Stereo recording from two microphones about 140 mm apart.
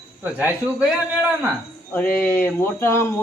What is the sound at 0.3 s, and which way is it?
A man's voice, 10° right (ahead or behind).